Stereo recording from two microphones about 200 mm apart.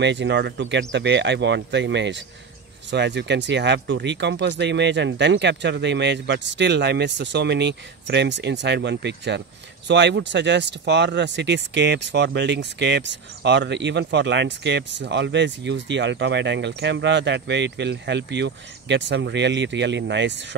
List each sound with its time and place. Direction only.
0.0 s speech: 60° right (ahead or behind)